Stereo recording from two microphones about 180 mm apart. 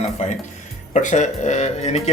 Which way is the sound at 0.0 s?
40° left (ahead or behind).